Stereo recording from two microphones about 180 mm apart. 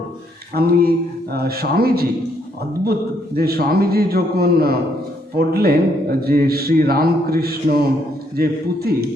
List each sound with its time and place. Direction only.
0.5 s speech: 60° right (ahead or behind)
3.3 s speech: 60° right (ahead or behind)